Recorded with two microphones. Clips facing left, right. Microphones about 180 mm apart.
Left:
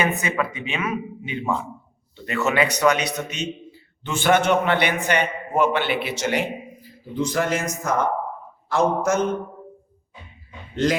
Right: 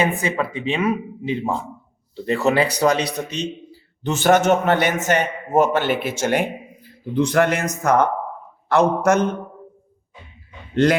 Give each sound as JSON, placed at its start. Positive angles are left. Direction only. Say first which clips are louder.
{"t": 0.0, "sound": "a man's voice", "louder": "right 2 dB", "side_deg": -30}
{"t": 6.8, "sound": "speech", "louder": "right 6 dB", "side_deg": -65}